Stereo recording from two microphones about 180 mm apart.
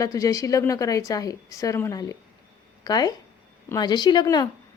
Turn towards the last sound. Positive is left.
turn(degrees=20)  # may be behind; listen again after turning